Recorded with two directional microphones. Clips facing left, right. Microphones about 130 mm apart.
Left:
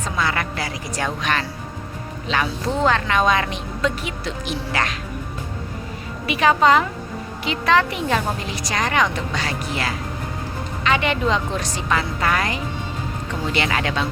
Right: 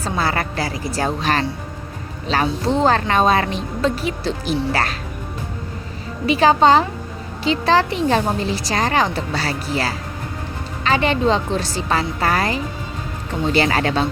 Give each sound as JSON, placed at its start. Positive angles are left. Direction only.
{"t": 0.0, "sound": "speech", "side_deg": -35}
{"t": 6.2, "sound": "speech", "side_deg": -30}